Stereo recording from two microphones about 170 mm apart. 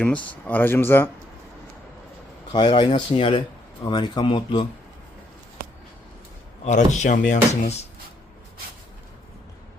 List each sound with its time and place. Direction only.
0.0 s speech: 10° left (ahead or behind)
2.5 s speech: 25° left (ahead or behind)
6.7 s speech: 45° left (ahead or behind)